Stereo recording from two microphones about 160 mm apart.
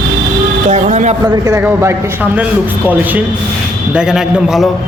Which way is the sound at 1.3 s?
25° right (ahead or behind).